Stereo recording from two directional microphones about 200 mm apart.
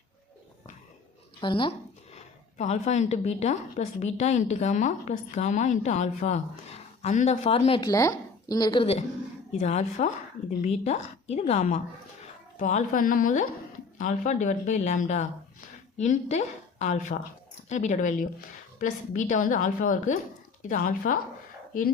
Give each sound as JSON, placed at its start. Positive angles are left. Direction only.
{"t": 1.4, "sound": "speech", "side_deg": 25}
{"t": 2.1, "sound": "a woman's voice", "side_deg": 35}